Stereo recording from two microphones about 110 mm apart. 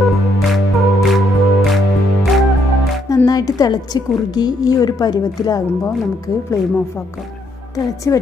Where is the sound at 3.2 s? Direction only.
35° left (ahead or behind).